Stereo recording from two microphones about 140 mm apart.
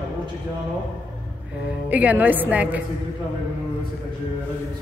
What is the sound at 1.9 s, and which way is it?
Speech, 10° right (ahead or behind).